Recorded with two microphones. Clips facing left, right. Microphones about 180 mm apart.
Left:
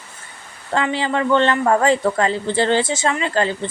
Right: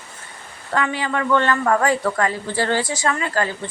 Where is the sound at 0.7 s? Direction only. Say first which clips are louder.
Left 2 dB; 25° left (ahead or behind).